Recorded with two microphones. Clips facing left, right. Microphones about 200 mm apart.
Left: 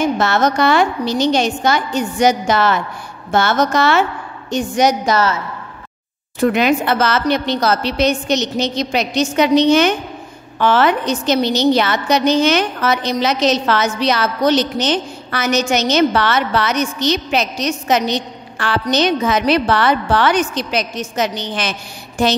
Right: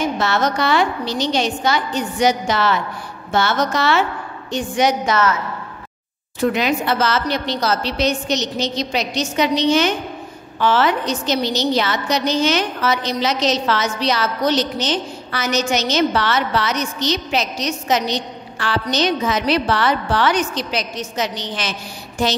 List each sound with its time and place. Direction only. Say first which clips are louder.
0.2 s a woman's voice: left 4 dB; 50° left (ahead or behind)
6.4 s a woman's voice: left 4 dB; 55° left (ahead or behind)